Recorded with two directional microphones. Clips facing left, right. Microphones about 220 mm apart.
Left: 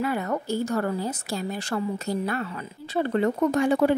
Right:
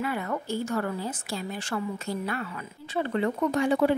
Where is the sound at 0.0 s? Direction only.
40° left (ahead or behind).